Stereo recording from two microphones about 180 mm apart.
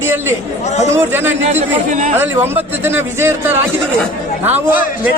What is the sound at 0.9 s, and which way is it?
Speech, 15° right (ahead or behind).